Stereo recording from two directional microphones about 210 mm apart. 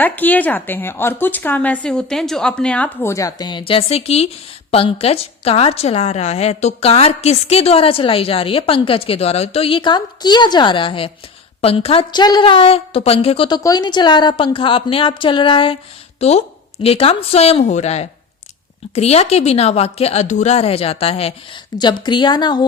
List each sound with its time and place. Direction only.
0.0 s a woman's voice: 10° left (ahead or behind)